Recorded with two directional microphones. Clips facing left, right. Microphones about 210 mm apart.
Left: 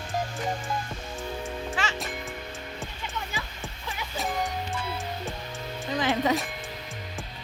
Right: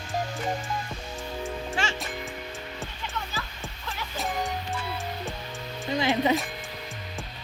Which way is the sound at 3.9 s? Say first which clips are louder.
Even; centre (ahead or behind).